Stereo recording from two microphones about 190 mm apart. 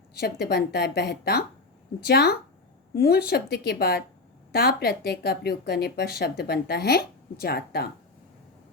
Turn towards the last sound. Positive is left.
turn(degrees=55)  # may be behind; listen again after turning